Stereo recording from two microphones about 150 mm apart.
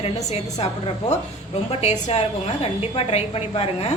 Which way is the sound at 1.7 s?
45° left (ahead or behind).